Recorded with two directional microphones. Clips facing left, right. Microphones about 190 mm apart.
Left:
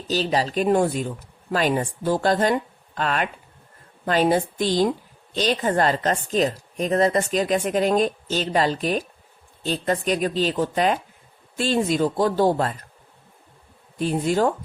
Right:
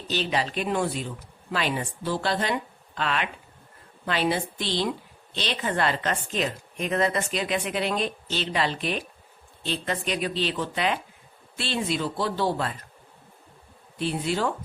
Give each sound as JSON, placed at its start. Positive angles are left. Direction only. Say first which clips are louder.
{"t": 0.1, "sound": "a woman's voice", "louder": "left 5 dB", "side_deg": 40}
{"t": 14.0, "sound": "a woman's voice", "louder": "left 6 dB", "side_deg": 45}